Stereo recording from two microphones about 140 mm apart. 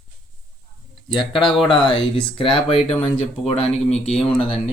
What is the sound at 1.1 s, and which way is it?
Speech, 35° left (ahead or behind).